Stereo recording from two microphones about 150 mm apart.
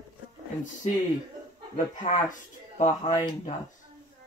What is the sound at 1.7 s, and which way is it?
Speech, 60° left (ahead or behind).